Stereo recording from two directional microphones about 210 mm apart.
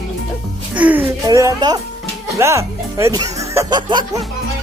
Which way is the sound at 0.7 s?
5° right (ahead or behind).